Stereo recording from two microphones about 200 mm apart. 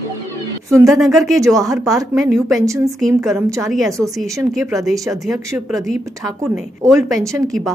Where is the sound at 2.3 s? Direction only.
Centre (ahead or behind).